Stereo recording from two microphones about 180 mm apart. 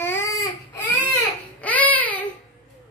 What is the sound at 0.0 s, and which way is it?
Baby cry, 15° left (ahead or behind).